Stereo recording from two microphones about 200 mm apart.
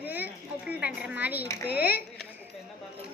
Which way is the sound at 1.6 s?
50° left (ahead or behind).